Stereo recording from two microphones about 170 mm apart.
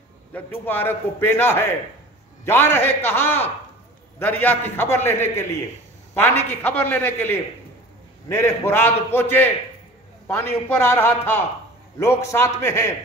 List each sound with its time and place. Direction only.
0.3 s a man's voice: 10° left (ahead or behind)